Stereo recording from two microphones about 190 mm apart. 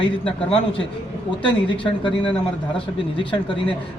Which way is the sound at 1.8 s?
25° left (ahead or behind).